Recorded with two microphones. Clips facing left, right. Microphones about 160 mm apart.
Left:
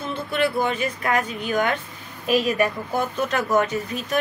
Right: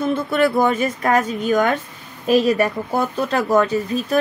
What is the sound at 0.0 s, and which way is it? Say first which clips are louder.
A woman's voice: right 6 dB; 45° right (ahead or behind).